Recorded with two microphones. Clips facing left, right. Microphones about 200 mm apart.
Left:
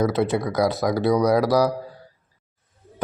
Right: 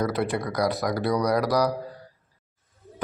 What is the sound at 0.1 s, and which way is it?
Speech, 25° left (ahead or behind).